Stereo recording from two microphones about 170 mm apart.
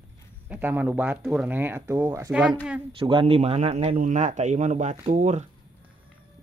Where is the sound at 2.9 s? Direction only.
30° right (ahead or behind).